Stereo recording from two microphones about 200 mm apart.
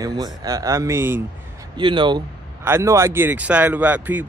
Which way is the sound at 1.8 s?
25° right (ahead or behind).